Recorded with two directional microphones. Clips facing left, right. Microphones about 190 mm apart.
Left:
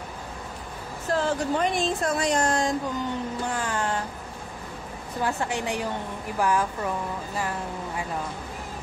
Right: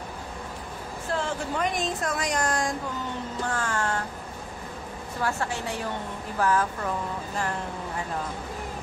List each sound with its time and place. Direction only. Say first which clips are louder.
1.1 s a woman's voice: left 5 dB; 30° left (ahead or behind)
5.2 s a woman's voice: left 2 dB; 15° left (ahead or behind)